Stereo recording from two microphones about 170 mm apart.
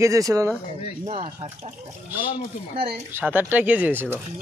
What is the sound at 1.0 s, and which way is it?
Speech, 40° right (ahead or behind).